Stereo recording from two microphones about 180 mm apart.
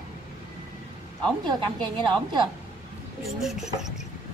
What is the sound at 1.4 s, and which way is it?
A woman's voice, 25° right (ahead or behind).